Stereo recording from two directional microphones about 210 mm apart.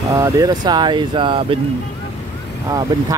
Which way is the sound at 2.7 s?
15° right (ahead or behind).